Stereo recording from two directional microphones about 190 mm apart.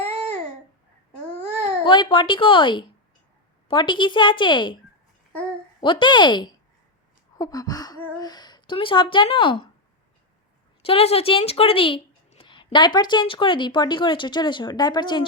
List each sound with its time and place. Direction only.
1.8 s a woman's voice: 25° left (ahead or behind)
5.8 s a woman's voice: 25° left (ahead or behind)
10.8 s a woman's voice: 30° left (ahead or behind)